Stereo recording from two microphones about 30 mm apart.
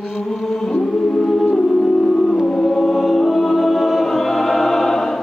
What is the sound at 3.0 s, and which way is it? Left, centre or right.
Music, centre.